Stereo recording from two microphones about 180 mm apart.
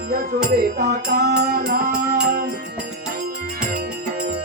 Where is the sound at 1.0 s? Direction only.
65° right (ahead or behind).